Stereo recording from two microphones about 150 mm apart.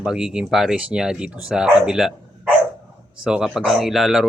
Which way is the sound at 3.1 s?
5° right (ahead or behind).